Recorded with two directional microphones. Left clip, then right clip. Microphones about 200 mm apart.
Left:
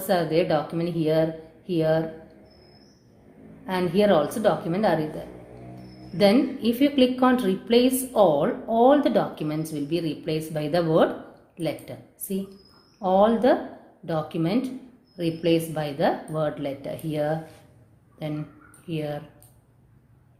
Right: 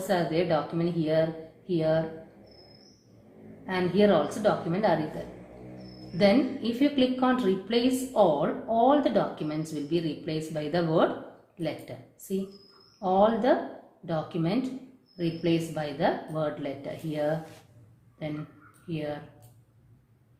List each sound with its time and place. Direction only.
0.1 s a woman's voice: 45° left (ahead or behind)
3.7 s a woman's voice: 45° left (ahead or behind)
6.1 s a woman's voice: 45° left (ahead or behind)
13.0 s a woman's voice: 45° left (ahead or behind)
18.9 s a woman's voice: 45° left (ahead or behind)